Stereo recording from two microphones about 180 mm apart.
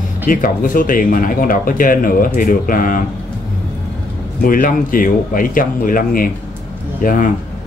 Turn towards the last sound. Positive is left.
turn(degrees=50)  # may be behind; listen again after turning